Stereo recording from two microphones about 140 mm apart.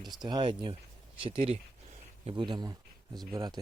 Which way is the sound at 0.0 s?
Centre (ahead or behind).